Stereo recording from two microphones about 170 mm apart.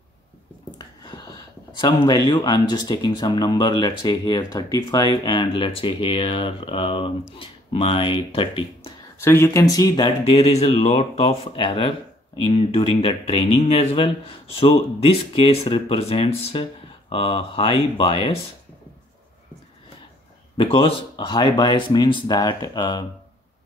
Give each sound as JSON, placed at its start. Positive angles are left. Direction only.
{"t": 0.7, "sound": "a sound", "side_deg": 25}
{"t": 1.8, "sound": "speech", "side_deg": 25}
{"t": 9.2, "sound": "speech", "side_deg": 15}
{"t": 20.5, "sound": "speech", "side_deg": 30}